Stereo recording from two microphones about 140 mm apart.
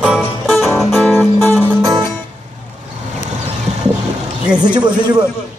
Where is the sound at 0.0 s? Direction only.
5° right (ahead or behind).